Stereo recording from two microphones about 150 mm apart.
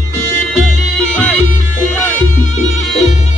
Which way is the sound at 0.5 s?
5° left (ahead or behind).